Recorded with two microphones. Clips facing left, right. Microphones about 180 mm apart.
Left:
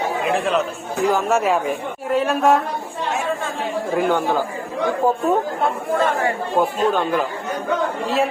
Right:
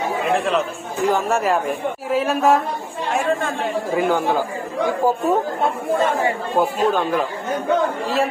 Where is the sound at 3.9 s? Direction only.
Centre (ahead or behind).